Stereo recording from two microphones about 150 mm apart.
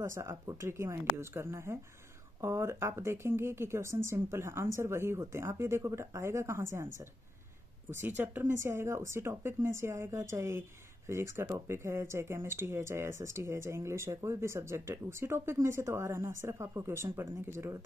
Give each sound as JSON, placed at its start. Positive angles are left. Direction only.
{"t": 0.0, "sound": "speech", "side_deg": -20}
{"t": 8.2, "sound": "speech", "side_deg": -15}